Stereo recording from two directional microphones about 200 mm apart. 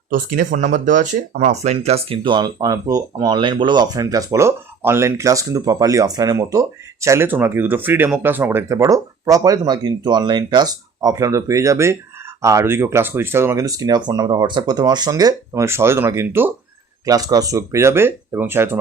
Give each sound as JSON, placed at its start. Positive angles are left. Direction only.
{"t": 0.1, "sound": "speech", "side_deg": -40}